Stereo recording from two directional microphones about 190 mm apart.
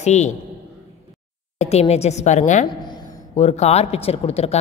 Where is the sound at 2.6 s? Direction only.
25° left (ahead or behind).